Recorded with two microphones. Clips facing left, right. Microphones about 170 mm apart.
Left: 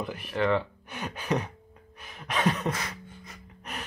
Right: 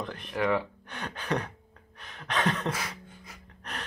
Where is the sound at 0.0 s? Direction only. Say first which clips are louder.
Left 2 dB; 10° left (ahead or behind).